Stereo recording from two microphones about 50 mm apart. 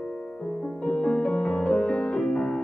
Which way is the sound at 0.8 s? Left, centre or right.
Centre.